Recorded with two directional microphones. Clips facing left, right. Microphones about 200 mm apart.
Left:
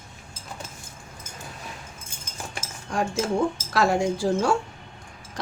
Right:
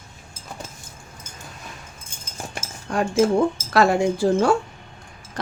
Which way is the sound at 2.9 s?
60° right (ahead or behind).